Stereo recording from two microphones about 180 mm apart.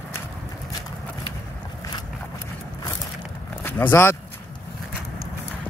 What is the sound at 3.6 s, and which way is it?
Speech, 10° left (ahead or behind).